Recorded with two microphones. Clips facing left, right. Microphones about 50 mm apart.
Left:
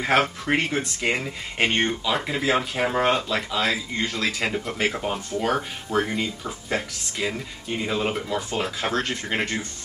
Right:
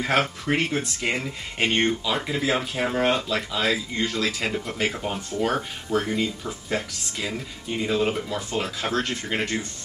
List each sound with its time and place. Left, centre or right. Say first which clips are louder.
0.0 s speech: left 2 dB; centre